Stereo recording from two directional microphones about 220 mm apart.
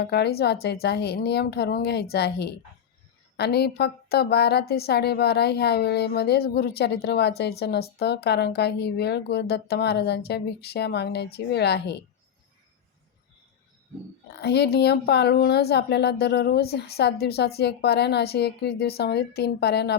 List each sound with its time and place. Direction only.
0.0 s a woman's voice: 45° left (ahead or behind)
14.4 s a woman's voice: 50° left (ahead or behind)